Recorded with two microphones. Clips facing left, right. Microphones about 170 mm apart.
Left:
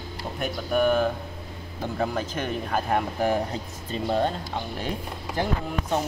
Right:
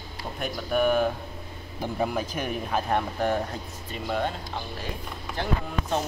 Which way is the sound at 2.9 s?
10° left (ahead or behind).